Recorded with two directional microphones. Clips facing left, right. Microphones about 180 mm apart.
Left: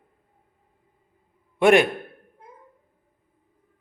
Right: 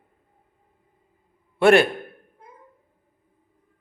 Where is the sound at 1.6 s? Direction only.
15° left (ahead or behind).